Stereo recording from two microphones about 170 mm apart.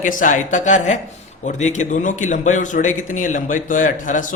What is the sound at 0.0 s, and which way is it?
A man's voice, 50° left (ahead or behind).